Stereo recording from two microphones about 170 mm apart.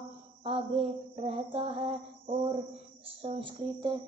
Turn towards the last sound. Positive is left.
turn(degrees=-30)  # may be behind; listen again after turning